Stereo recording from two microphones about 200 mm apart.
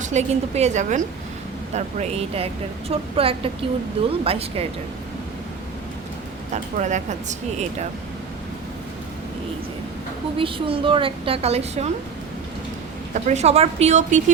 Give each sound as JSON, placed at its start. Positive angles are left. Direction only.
{"t": 0.0, "sound": "a woman's voice", "side_deg": -35}
{"t": 6.5, "sound": "a woman's voice", "side_deg": -35}
{"t": 10.3, "sound": "a woman's voice", "side_deg": -25}
{"t": 13.1, "sound": "a woman's voice", "side_deg": -35}